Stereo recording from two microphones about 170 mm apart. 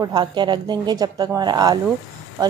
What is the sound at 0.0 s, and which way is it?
A woman's voice, 25° right (ahead or behind).